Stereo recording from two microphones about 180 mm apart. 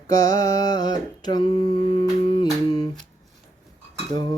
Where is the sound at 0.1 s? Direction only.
20° left (ahead or behind).